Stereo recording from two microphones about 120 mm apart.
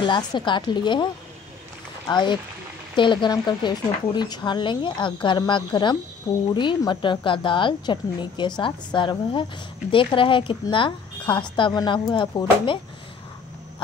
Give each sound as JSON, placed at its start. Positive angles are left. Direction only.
{"t": 0.0, "sound": "speech", "side_deg": 40}
{"t": 2.0, "sound": "a woman's voice", "side_deg": 40}